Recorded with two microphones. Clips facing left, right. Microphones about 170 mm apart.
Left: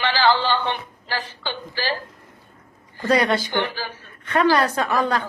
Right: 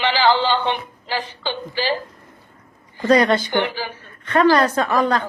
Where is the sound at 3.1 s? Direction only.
10° left (ahead or behind).